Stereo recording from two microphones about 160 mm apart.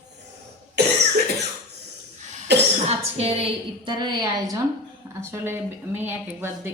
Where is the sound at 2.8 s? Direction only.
40° right (ahead or behind).